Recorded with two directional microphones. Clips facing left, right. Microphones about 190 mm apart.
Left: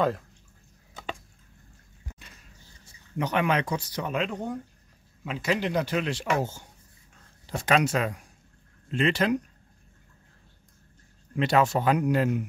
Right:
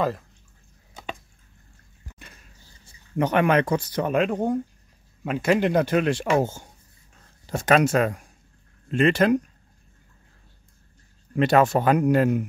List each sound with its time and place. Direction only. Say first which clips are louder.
3.2 s speech: right 6 dB; 55° right (ahead or behind)
7.4 s speech: right 5 dB; 50° right (ahead or behind)
11.3 s speech: right 4 dB; 50° right (ahead or behind)